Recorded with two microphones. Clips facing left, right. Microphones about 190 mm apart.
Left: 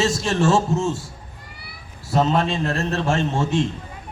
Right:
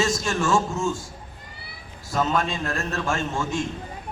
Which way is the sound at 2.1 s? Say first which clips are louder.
Left 4 dB; 30° left (ahead or behind).